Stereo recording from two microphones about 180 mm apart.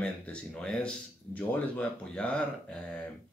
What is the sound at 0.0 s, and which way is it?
Speech, 5° left (ahead or behind).